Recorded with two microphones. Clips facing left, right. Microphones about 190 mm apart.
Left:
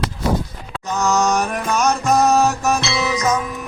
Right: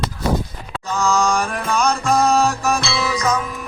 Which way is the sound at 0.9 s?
20° left (ahead or behind).